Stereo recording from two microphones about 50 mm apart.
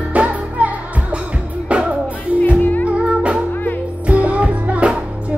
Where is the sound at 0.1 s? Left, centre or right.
Right.